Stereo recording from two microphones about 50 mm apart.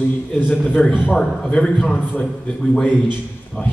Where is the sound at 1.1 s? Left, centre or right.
Centre.